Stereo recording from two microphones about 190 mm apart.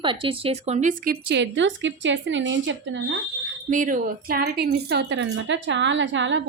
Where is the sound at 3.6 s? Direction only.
45° right (ahead or behind); by 6.4 s 75° right (ahead or behind).